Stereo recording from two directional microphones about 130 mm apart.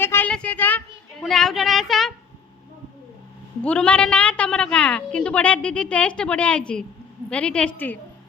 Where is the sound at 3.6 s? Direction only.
10° left (ahead or behind).